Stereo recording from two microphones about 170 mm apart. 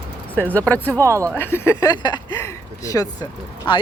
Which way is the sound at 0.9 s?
20° right (ahead or behind).